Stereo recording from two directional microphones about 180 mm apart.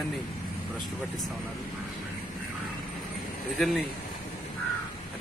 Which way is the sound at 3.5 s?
Centre (ahead or behind).